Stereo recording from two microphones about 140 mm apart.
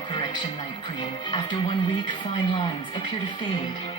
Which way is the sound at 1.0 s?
35° left (ahead or behind).